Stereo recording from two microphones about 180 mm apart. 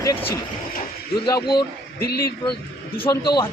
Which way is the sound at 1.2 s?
25° left (ahead or behind).